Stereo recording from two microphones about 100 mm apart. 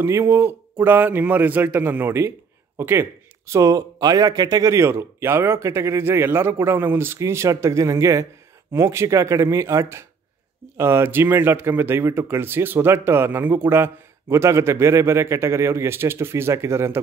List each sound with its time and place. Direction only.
0.0 s speech: 25° right (ahead or behind)